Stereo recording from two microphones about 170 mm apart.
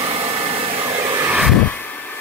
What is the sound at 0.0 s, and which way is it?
Vacuum cleaner, 35° right (ahead or behind).